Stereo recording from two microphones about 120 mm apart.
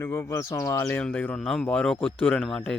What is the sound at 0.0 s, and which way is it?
Speech, 25° left (ahead or behind).